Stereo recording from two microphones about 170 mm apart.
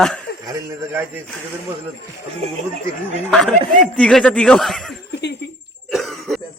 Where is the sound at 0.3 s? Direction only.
65° left (ahead or behind).